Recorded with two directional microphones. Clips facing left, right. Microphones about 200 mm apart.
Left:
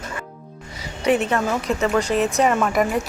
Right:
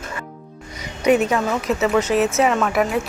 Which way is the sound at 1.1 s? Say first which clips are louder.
Right 2 dB; 10° right (ahead or behind).